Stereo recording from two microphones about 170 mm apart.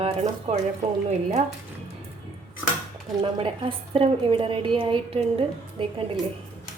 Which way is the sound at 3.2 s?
30° right (ahead or behind).